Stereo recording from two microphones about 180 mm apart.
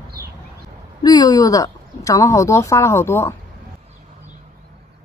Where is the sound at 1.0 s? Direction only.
20° left (ahead or behind).